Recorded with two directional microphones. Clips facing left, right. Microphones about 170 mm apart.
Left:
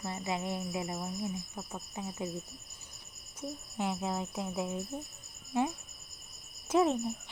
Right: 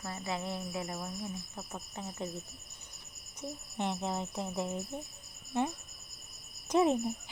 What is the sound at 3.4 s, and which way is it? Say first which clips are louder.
Speech: left 1 dB; 5° left (ahead or behind).